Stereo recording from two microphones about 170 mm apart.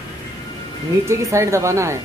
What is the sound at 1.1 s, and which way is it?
Speech, 15° right (ahead or behind).